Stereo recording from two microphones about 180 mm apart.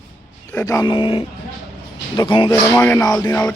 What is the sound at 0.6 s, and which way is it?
Speech, 20° left (ahead or behind).